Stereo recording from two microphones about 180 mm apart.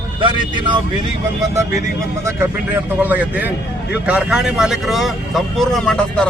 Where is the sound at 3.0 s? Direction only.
10° right (ahead or behind).